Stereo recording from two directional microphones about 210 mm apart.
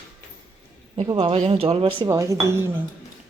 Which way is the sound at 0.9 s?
25° right (ahead or behind).